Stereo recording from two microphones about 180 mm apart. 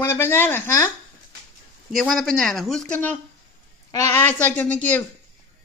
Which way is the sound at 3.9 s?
15° left (ahead or behind).